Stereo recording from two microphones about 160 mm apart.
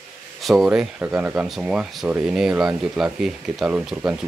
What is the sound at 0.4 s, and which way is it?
Speech, centre (ahead or behind).